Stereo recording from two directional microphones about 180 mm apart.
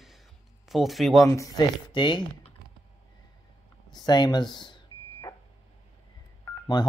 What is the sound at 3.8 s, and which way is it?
Speech, 25° left (ahead or behind).